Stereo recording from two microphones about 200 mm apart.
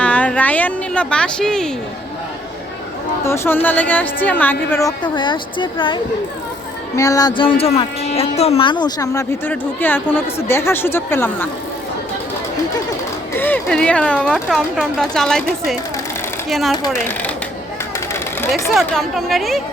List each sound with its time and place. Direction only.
0.0 s a sound: 5° left (ahead or behind)
3.2 s speech: 10° left (ahead or behind)
13.3 s speech: 10° left (ahead or behind)
16.5 s speech: centre (ahead or behind)
18.1 s sewing machine: 15° left (ahead or behind)
18.7 s speech: centre (ahead or behind)